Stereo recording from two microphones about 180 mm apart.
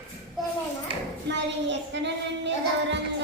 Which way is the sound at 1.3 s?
80° right.